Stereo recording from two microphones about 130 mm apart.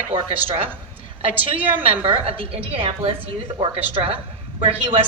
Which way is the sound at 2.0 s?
45° right (ahead or behind).